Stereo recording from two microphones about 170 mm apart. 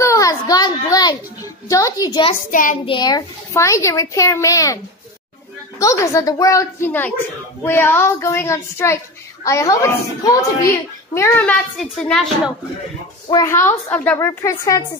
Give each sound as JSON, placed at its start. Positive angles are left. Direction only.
{"t": 0.0, "sound": "a child's voice", "side_deg": 20}
{"t": 2.5, "sound": "a child's voice", "side_deg": 50}
{"t": 2.8, "sound": "a child's voice", "side_deg": 25}
{"t": 5.8, "sound": "a child's voice", "side_deg": 20}
{"t": 13.3, "sound": "a child's voice", "side_deg": 15}